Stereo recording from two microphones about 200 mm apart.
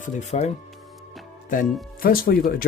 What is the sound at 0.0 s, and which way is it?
Speech, 35° left (ahead or behind).